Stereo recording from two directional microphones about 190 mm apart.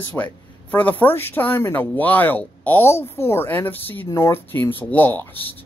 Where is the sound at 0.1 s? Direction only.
10° left (ahead or behind).